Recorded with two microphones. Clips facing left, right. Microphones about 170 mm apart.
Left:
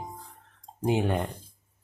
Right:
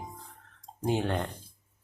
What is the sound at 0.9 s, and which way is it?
Speech, 15° left (ahead or behind).